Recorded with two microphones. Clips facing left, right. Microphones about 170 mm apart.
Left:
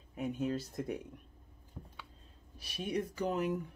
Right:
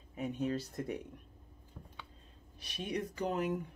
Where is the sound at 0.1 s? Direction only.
Centre (ahead or behind).